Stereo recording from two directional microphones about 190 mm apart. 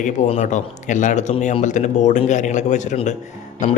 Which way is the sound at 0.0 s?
40° left (ahead or behind).